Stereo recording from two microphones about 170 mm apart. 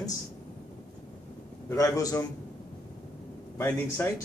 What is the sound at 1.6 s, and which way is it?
Speech, 20° left (ahead or behind).